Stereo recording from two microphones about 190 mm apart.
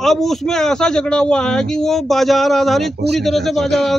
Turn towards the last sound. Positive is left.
turn(degrees=0)  # may be behind; listen again after turning